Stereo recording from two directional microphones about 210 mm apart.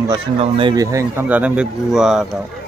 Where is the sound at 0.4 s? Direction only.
25° right (ahead or behind); by 2.2 s centre (ahead or behind).